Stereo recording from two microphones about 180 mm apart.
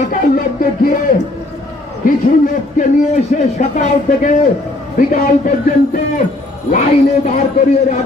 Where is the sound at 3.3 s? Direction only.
40° left (ahead or behind).